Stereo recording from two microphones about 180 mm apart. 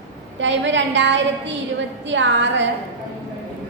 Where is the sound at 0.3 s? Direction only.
90° right.